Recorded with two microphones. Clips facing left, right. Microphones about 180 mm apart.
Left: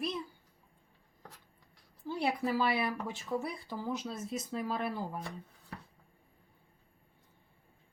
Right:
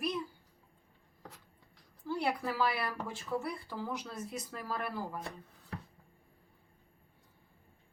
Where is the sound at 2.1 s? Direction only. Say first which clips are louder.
Left 2 dB; 20° left (ahead or behind).